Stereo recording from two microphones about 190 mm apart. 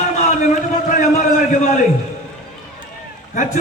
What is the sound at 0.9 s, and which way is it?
Speech, 45° left (ahead or behind).